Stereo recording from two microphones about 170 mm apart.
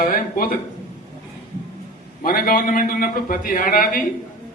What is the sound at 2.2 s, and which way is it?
A man's voice, 55° left (ahead or behind).